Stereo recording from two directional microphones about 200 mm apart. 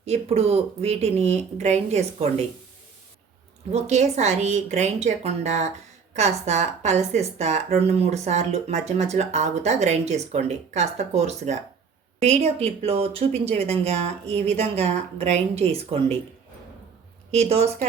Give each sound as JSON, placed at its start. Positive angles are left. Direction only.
{"t": 0.0, "sound": "speech", "side_deg": -30}
{"t": 3.7, "sound": "speech", "side_deg": -35}
{"t": 17.3, "sound": "speech", "side_deg": -30}